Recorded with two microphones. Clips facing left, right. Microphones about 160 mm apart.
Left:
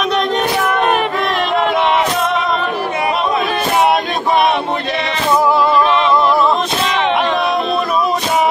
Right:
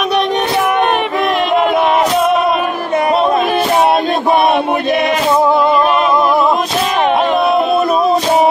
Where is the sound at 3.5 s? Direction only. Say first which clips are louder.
Right 2 dB; 25° right (ahead or behind).